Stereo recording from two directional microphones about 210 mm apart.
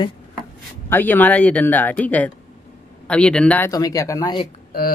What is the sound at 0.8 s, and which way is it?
Speech, 10° left (ahead or behind).